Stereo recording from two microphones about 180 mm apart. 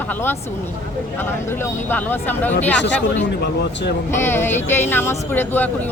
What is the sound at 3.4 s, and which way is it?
Speech, 65° left (ahead or behind).